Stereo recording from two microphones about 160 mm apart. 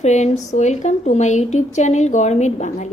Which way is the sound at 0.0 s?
45° left (ahead or behind).